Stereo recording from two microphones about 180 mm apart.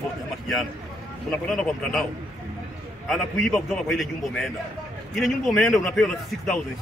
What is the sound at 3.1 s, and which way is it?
Speech, 5° left (ahead or behind).